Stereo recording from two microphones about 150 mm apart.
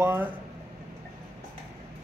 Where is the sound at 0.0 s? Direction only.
15° right (ahead or behind).